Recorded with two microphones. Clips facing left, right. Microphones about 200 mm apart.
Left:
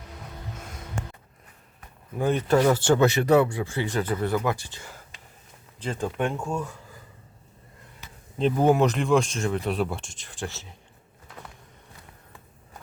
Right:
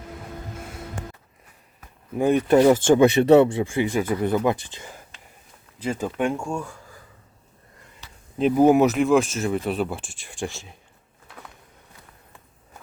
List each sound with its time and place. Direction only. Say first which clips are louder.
2.1 s speech: right 5 dB; 15° right (ahead or behind)
6.3 s speech: right 1 dB; 5° left (ahead or behind)
8.4 s speech: right 4 dB; 10° right (ahead or behind)